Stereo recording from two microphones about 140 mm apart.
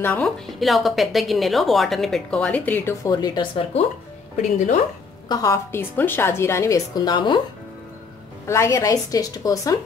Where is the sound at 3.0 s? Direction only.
30° left (ahead or behind).